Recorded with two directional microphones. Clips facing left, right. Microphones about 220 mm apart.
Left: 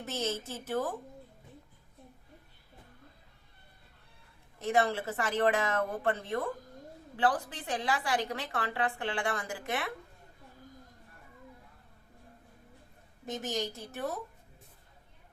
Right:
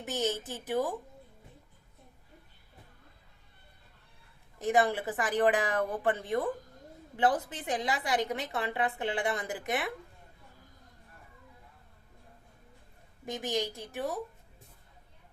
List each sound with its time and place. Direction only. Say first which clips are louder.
0.0 s speech: right 2 dB; 15° right (ahead or behind)
4.6 s a woman's voice: right 2 dB; 15° right (ahead or behind)
13.2 s speech: right 2 dB; 15° right (ahead or behind)